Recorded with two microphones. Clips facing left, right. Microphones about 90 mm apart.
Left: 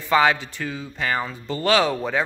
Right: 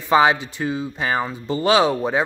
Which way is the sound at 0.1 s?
20° right (ahead or behind).